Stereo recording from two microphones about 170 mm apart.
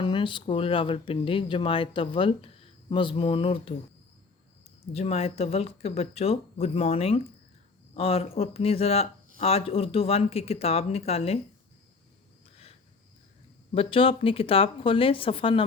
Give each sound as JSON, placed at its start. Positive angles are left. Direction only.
{"t": 0.0, "sound": "speech", "side_deg": 30}
{"t": 4.9, "sound": "speech", "side_deg": 35}
{"t": 13.7, "sound": "speech", "side_deg": 30}